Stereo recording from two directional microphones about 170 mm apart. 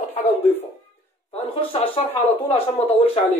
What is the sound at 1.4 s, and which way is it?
Speech, 35° left (ahead or behind).